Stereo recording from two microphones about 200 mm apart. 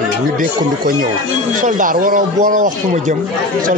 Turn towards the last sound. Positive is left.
turn(degrees=-40)  # may be behind; listen again after turning